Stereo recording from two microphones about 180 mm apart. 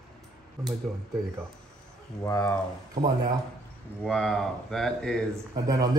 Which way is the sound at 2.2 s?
10° left (ahead or behind).